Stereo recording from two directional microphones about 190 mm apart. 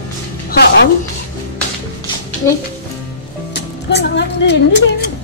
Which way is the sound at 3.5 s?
65° left (ahead or behind).